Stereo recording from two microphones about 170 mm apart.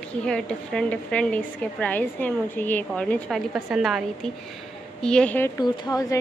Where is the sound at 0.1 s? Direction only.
5° left (ahead or behind).